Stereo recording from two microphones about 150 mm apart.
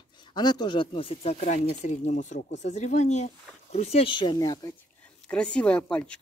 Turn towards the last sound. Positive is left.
turn(degrees=10)  # may be behind; listen again after turning